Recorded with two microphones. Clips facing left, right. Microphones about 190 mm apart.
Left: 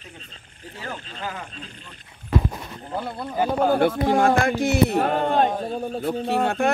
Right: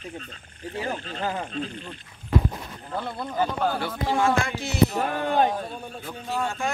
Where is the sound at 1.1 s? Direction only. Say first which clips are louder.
Right 5 dB; 35° right (ahead or behind).